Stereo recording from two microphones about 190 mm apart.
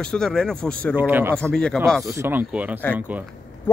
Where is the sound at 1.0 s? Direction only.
10° right (ahead or behind).